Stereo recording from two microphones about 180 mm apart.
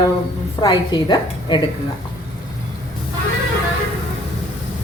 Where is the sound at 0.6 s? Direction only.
25° left (ahead or behind).